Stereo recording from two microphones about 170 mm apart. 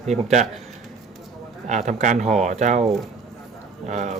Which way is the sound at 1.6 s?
45° right (ahead or behind).